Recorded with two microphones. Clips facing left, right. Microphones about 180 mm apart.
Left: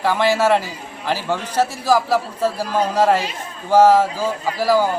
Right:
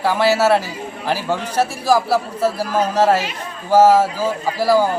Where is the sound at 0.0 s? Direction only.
10° right (ahead or behind).